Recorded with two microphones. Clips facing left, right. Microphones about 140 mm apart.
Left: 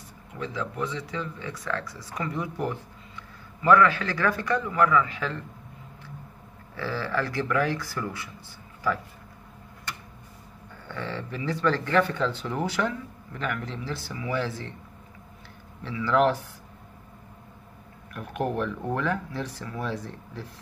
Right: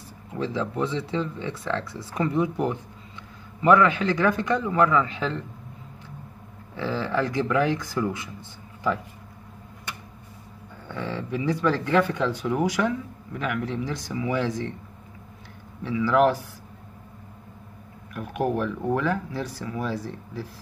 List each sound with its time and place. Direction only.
0.4 s speech: 30° right (ahead or behind)
6.7 s speech: 20° right (ahead or behind)
10.9 s speech: 15° right (ahead or behind)
15.8 s speech: 10° right (ahead or behind)
18.1 s speech: 10° right (ahead or behind)